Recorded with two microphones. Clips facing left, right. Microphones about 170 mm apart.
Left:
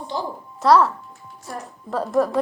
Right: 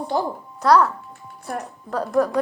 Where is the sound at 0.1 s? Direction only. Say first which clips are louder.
Right 5 dB; 60° right (ahead or behind).